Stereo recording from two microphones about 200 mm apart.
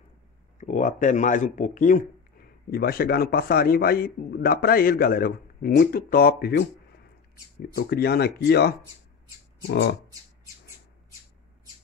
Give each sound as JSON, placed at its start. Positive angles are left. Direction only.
{"t": 0.6, "sound": "a man's voice", "side_deg": 40}
{"t": 7.7, "sound": "a man's voice", "side_deg": 50}